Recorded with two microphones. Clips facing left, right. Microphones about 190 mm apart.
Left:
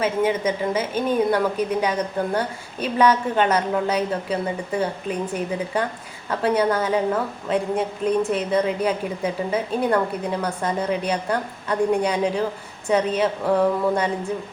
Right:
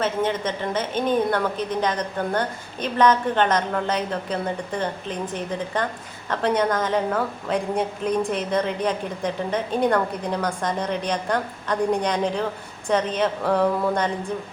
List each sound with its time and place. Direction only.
0.0 s a woman's voice: 10° left (ahead or behind)